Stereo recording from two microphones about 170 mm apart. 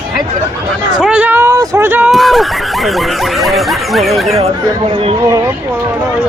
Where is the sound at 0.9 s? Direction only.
5° right (ahead or behind).